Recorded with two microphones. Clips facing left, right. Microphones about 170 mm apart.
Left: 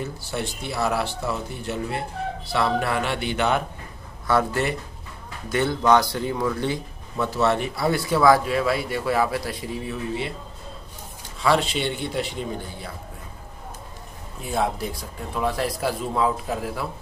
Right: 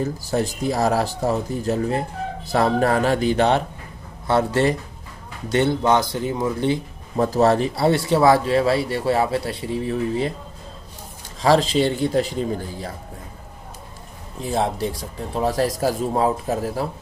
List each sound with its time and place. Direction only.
0.0 s speech: 40° right (ahead or behind); by 6.8 s 25° right (ahead or behind)
7.2 s speech: 40° right (ahead or behind)
11.4 s speech: 35° right (ahead or behind)
14.4 s speech: 35° right (ahead or behind)